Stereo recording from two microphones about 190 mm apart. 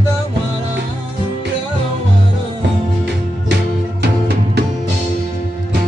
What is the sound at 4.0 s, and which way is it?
Music, 60° right (ahead or behind).